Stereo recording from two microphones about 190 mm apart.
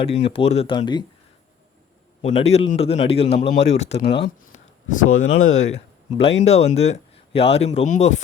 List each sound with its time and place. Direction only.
0.0 s speech: 30° left (ahead or behind)
2.2 s speech: 35° left (ahead or behind)
4.4 s a sound: 40° left (ahead or behind)
5.0 s speech: 90° left
5.5 s speech: 35° left (ahead or behind)